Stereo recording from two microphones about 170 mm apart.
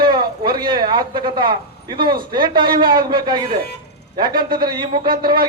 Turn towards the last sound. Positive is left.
turn(degrees=-25)  # may be behind; listen again after turning